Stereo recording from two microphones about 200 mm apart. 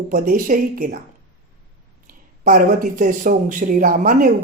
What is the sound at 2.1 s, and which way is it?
Speech, 45° right (ahead or behind).